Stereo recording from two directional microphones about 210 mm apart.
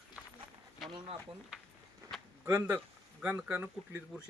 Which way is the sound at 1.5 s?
5° right (ahead or behind).